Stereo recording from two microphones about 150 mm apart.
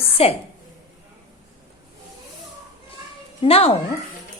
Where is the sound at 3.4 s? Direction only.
40° left (ahead or behind).